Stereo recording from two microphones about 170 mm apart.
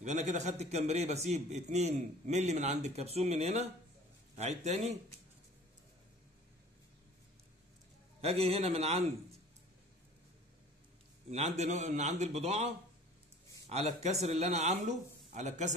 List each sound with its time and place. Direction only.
0.0 s a man's voice: 40° right (ahead or behind)
8.2 s a man's voice: 35° right (ahead or behind)
11.2 s a man's voice: 40° right (ahead or behind)